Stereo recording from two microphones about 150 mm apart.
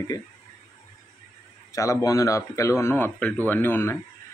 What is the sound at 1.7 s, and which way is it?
Speech, 20° left (ahead or behind).